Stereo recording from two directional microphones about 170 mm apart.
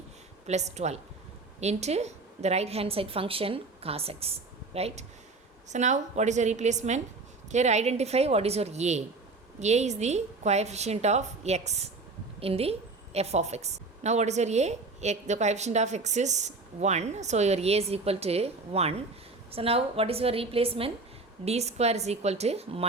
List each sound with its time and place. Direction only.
0.4 s a woman's voice: 40° right (ahead or behind)